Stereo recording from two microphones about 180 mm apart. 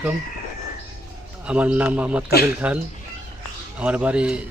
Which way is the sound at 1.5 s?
10° right (ahead or behind).